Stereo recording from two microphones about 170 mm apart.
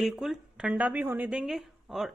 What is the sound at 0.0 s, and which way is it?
Speech, centre (ahead or behind).